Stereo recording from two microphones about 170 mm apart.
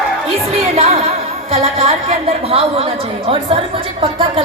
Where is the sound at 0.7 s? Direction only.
35° right (ahead or behind).